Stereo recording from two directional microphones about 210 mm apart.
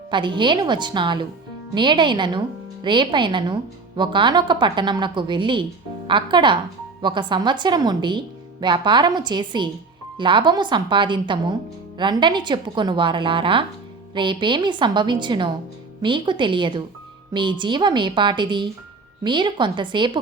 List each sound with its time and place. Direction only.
0.1 s a woman's voice: 20° right (ahead or behind)